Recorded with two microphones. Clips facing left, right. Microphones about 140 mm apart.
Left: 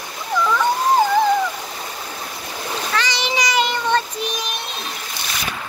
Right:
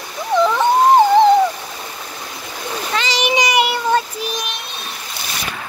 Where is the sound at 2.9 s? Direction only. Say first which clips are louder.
Right 5 dB; 20° right (ahead or behind).